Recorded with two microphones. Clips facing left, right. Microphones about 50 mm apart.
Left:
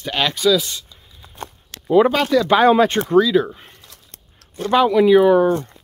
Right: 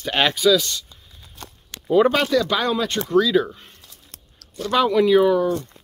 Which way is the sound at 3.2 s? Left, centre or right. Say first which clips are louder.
Left 2 dB; centre.